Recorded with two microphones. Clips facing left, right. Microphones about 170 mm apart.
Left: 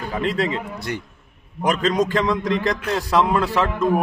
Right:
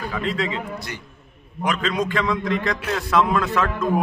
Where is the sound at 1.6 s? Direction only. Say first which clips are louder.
Left 4 dB; 40° left (ahead or behind).